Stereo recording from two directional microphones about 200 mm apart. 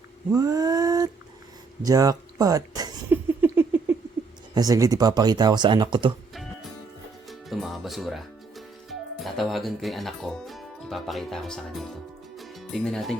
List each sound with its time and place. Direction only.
0.3 s a sound: 20° right (ahead or behind)
4.5 s speech: 20° right (ahead or behind)
7.3 s music: centre (ahead or behind)